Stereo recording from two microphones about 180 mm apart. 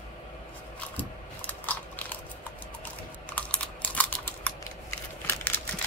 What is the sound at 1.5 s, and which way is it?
Biting, 10° left (ahead or behind).